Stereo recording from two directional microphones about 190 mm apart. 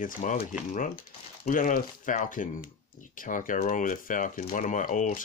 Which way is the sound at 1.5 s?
45° left (ahead or behind).